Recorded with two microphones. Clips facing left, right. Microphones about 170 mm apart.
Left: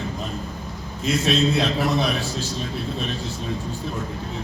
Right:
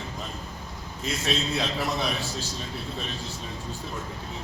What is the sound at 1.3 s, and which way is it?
Speech, 65° left (ahead or behind).